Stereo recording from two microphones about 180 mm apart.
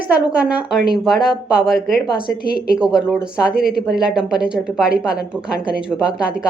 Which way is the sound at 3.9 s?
5° right (ahead or behind).